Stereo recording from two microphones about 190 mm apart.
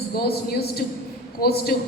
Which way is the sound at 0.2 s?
55° left (ahead or behind).